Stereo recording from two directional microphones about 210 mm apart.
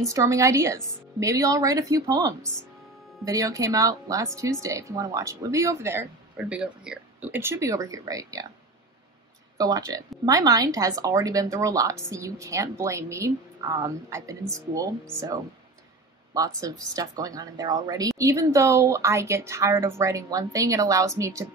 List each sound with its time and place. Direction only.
0.0 s speech: 15° right (ahead or behind)
9.6 s speech: 15° right (ahead or behind)
16.3 s speech: 15° right (ahead or behind)